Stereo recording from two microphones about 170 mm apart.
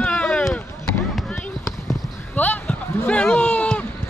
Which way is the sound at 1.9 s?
5° left (ahead or behind).